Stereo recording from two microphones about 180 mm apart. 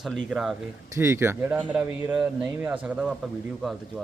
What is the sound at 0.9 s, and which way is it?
A man's voice, 15° right (ahead or behind).